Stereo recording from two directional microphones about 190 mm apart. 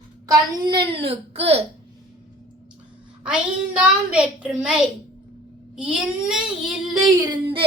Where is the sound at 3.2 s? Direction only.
5° right (ahead or behind).